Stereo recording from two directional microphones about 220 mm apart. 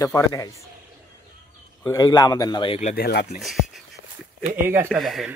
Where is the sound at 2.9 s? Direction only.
45° left (ahead or behind).